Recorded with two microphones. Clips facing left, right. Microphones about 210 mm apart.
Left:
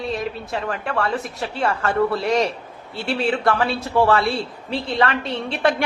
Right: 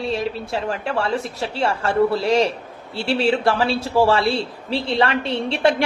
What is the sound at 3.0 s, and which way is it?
A man's voice, 30° right (ahead or behind).